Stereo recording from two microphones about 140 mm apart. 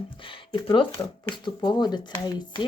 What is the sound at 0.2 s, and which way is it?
Speech, 40° left (ahead or behind).